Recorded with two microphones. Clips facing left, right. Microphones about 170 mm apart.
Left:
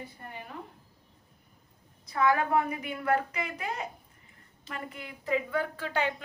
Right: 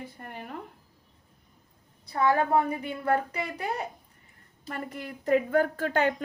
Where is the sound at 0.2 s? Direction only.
55° right (ahead or behind).